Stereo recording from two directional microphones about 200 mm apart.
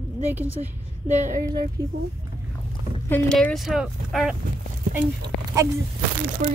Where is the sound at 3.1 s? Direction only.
5° left (ahead or behind).